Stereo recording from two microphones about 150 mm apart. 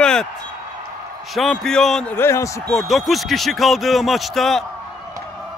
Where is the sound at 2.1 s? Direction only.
15° left (ahead or behind).